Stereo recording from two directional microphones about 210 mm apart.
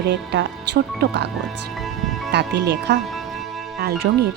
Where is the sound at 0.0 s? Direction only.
55° right (ahead or behind).